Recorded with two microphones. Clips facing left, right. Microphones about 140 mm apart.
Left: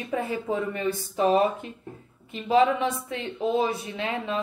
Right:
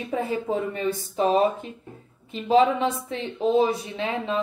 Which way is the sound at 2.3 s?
30° right (ahead or behind).